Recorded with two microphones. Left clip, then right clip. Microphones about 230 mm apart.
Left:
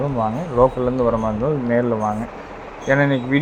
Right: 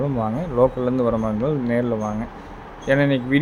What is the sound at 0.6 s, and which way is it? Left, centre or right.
Speech, centre.